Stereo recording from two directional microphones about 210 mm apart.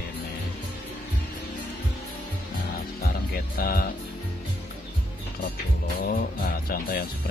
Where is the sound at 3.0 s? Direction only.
45° left (ahead or behind).